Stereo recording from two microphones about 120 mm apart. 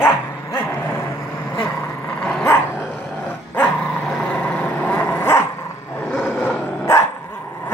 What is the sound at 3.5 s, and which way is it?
Dog, 10° left (ahead or behind).